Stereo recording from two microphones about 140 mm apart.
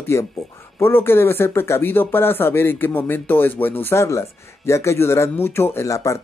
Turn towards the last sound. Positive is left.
turn(degrees=20)  # may be behind; listen again after turning